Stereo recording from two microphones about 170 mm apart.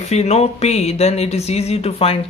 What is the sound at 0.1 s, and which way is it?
Speech, 40° left (ahead or behind).